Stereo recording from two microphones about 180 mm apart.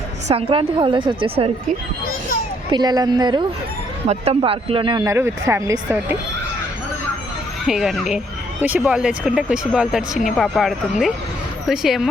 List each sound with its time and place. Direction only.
0.3 s a woman's voice: 30° right (ahead or behind)
2.7 s a woman's voice: 20° right (ahead or behind)
4.0 s speech: 35° right (ahead or behind)
5.1 s speech: 15° right (ahead or behind)
7.7 s speech: centre (ahead or behind)